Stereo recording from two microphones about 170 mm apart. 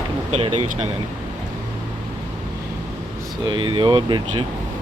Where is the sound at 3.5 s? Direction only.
30° right (ahead or behind).